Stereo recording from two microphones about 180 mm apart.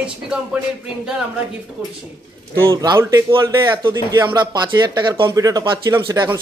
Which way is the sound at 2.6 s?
20° right (ahead or behind).